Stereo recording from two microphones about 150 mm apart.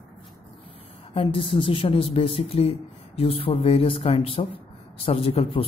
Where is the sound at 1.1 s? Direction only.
35° left (ahead or behind).